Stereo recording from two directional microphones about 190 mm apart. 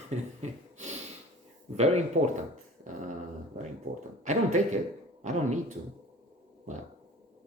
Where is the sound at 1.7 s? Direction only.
35° right (ahead or behind).